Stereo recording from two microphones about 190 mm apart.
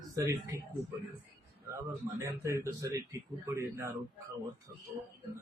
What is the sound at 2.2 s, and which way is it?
A woman's voice, 15° right (ahead or behind).